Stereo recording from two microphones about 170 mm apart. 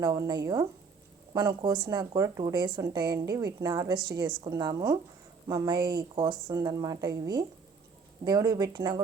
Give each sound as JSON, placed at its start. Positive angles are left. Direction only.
{"t": 0.0, "sound": "speech", "side_deg": -20}